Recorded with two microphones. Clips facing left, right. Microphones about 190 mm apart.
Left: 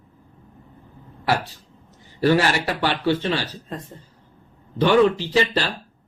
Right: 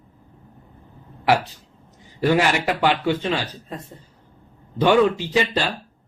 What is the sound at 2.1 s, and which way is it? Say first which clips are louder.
Speech: left 1 dB; 15° right (ahead or behind).